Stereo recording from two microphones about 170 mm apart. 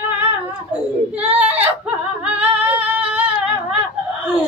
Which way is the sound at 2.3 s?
10° right (ahead or behind).